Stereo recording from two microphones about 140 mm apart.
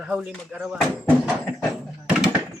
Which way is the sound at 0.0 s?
10° right (ahead or behind).